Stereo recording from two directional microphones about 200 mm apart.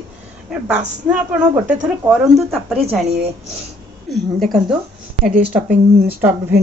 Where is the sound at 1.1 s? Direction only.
5° right (ahead or behind).